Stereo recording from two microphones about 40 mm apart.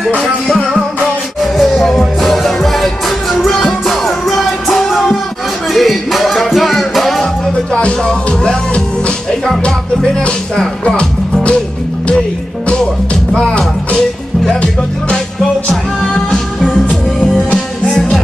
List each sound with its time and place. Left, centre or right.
1.4 s music: centre
3.4 s music: centre
7.7 s music: left
9.7 s music: centre
12.6 s music: left